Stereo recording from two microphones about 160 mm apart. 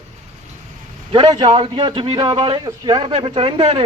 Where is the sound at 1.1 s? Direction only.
25° right (ahead or behind).